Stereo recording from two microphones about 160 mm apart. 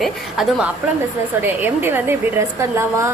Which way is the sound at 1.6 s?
15° right (ahead or behind).